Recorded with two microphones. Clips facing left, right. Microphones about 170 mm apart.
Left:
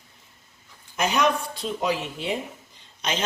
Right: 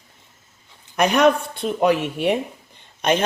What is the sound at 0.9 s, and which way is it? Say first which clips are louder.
Speech: right 7 dB; 60° right (ahead or behind).